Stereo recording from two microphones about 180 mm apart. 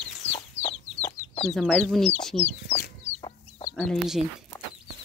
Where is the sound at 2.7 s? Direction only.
35° left (ahead or behind).